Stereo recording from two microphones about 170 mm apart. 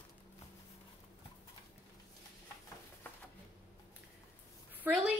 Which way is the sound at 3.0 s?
10° left (ahead or behind).